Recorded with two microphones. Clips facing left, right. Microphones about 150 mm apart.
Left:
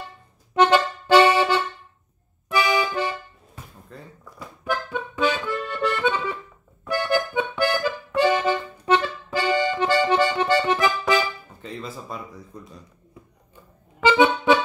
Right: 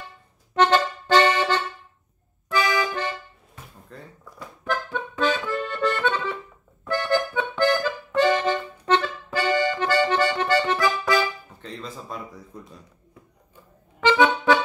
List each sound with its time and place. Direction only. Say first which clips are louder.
0.6 s accordion: left 1 dB; 15° left (ahead or behind)
3.9 s a sound: even; centre (ahead or behind)
4.4 s accordion: left 1 dB; 10° left (ahead or behind)
11.6 s music: left 2 dB; 5° left (ahead or behind)
12.5 s speech: even; 5° right (ahead or behind)
14.0 s accordion: left 1 dB; 20° left (ahead or behind)